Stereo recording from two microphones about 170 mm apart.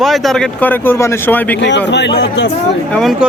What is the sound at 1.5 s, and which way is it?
Speech, 90° left.